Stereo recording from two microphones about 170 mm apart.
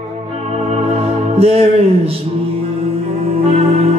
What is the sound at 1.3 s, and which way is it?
Music, 35° right (ahead or behind).